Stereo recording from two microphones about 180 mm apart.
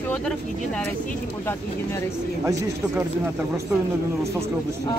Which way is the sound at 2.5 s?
20° right (ahead or behind).